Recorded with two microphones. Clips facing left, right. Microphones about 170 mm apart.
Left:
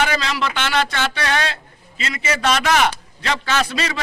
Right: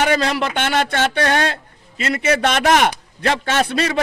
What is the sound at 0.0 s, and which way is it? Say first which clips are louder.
A man's voice: right 3 dB; 50° right (ahead or behind).